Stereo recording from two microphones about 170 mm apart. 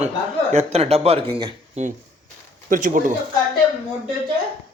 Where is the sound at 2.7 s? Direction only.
50° right (ahead or behind).